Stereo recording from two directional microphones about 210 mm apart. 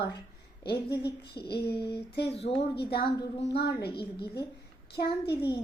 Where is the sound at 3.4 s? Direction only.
50° left (ahead or behind).